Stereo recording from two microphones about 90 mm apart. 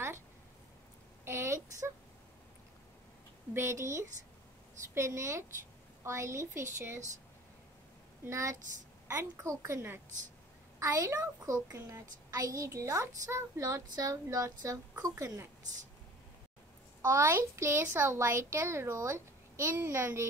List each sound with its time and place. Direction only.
1.2 s a sound: 30° right (ahead or behind)
3.5 s a woman's voice: 30° right (ahead or behind)
8.3 s a woman's voice: 35° right (ahead or behind)
17.0 s a woman's voice: 30° right (ahead or behind)